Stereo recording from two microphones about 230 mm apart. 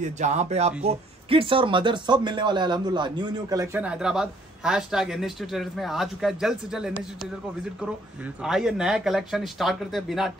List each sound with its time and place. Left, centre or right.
0.0 s speech: right; by 7.2 s centre
8.4 s speech: centre